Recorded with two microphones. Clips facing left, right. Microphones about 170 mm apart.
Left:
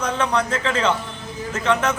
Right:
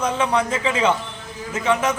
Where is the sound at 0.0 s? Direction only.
10° right (ahead or behind).